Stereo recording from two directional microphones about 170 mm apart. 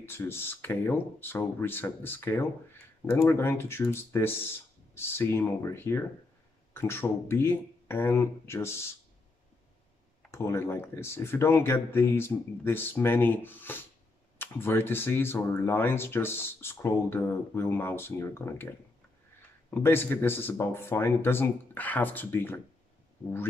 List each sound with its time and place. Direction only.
0.0 s speech: 15° left (ahead or behind)
10.3 s speech: 15° left (ahead or behind)
19.7 s speech: 15° left (ahead or behind)